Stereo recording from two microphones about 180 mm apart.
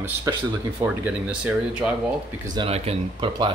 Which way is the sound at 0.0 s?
20° right (ahead or behind).